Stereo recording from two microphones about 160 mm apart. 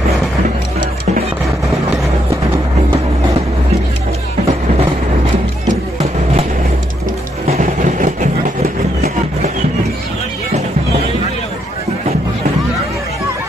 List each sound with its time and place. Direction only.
5.7 s music: 40° right (ahead or behind)
7.5 s vehicle: 55° right (ahead or behind)